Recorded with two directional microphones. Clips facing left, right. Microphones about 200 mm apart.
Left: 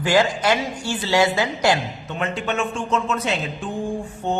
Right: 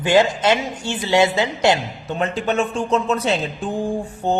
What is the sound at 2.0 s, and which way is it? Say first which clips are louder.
A woman's voice: right 4 dB; 35° right (ahead or behind).